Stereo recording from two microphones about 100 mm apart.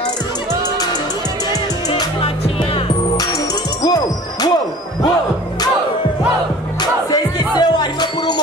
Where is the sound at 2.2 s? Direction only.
70° left (ahead or behind).